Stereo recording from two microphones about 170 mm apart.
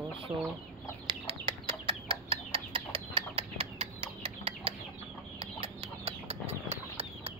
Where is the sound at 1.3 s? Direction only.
30° right (ahead or behind).